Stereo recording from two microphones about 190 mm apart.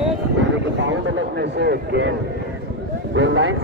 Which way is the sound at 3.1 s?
80° right.